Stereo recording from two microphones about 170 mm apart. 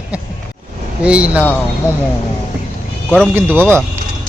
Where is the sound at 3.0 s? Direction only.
5° left (ahead or behind).